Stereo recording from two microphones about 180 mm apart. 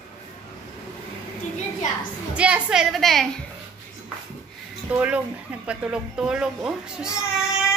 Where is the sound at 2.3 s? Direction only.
5° right (ahead or behind).